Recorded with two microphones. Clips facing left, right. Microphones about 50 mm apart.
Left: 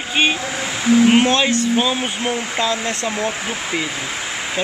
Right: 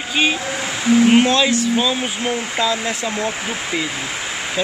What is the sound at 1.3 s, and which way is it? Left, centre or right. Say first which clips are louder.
Speech: even; left.